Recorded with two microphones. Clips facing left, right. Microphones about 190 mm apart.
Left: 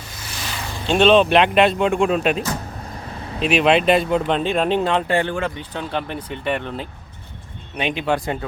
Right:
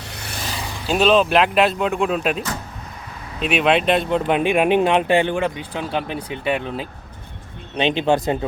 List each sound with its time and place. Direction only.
0.1 s a sound: 65° right (ahead or behind)
0.9 s speech: 5° right (ahead or behind)
3.4 s speech: centre (ahead or behind)
4.4 s speech: 10° right (ahead or behind)
7.8 s speech: 25° right (ahead or behind)